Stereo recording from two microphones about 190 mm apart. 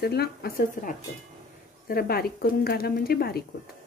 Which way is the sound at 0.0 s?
55° left (ahead or behind).